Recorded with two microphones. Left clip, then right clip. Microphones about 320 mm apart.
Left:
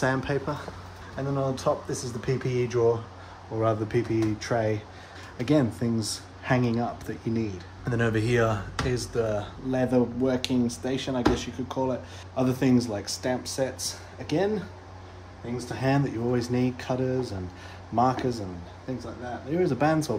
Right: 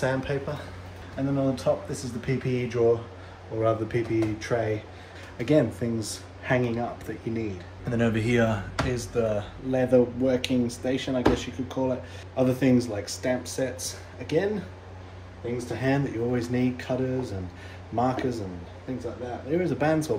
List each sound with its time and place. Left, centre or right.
0.0 s speech: centre
15.8 s speech: centre
19.6 s speech: centre